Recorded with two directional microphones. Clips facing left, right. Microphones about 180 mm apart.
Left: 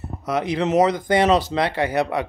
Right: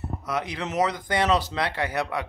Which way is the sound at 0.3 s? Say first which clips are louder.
Left 9 dB; 30° left (ahead or behind).